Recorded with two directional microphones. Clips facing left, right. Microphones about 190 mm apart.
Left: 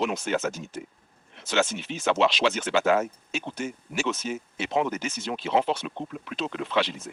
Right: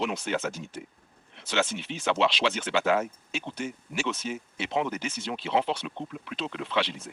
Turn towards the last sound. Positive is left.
turn(degrees=45)  # may be behind; listen again after turning